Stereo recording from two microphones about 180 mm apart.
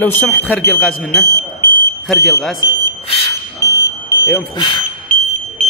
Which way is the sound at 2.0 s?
Centre (ahead or behind).